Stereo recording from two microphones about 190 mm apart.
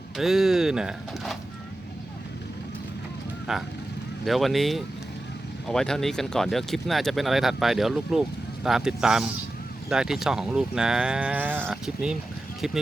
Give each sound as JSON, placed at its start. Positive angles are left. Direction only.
{"t": 0.2, "sound": "speech", "side_deg": 0}
{"t": 3.5, "sound": "speech", "side_deg": 0}